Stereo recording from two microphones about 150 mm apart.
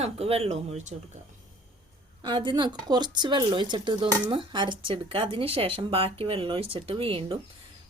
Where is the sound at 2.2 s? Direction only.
30° right (ahead or behind).